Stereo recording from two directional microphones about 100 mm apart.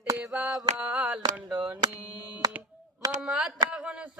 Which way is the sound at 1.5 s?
40° right (ahead or behind).